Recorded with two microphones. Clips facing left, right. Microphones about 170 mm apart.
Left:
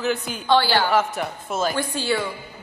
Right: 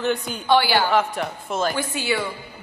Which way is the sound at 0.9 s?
5° left (ahead or behind).